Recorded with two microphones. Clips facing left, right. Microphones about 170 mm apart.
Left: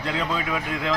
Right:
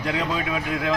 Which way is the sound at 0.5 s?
15° right (ahead or behind).